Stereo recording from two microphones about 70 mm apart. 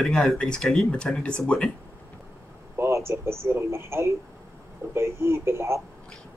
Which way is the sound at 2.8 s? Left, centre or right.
Right.